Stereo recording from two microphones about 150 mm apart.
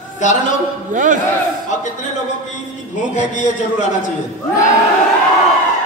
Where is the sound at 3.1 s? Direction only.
55° left (ahead or behind).